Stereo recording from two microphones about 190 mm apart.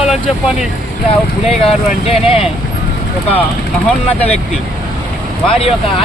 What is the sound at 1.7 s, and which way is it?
Speech, 30° left (ahead or behind).